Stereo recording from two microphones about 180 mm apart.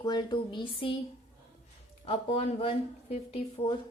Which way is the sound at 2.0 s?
30° left (ahead or behind).